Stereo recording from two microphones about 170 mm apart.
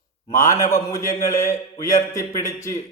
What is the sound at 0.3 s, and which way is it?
Speech, 15° left (ahead or behind).